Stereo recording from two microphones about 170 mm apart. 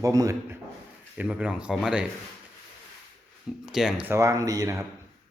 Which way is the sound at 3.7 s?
5° right (ahead or behind).